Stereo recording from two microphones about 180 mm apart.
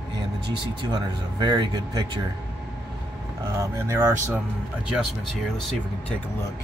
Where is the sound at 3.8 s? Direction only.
10° right (ahead or behind).